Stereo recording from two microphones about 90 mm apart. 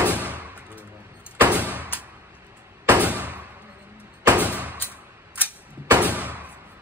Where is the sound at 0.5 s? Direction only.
15° right (ahead or behind).